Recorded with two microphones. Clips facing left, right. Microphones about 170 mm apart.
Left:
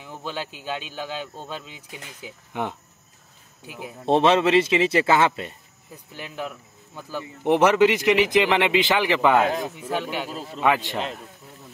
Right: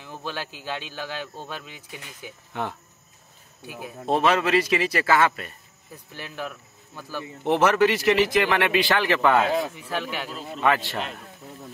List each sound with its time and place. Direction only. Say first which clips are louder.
0.0 s a man's voice: left 1 dB; 15° left (ahead or behind)
2.5 s a man's voice: left 2 dB; 15° left (ahead or behind)